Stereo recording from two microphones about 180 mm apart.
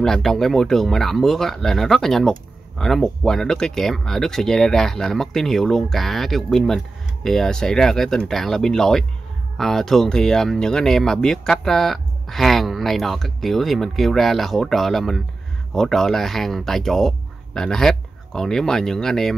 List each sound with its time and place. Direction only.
0.0 s speech: 5° left (ahead or behind)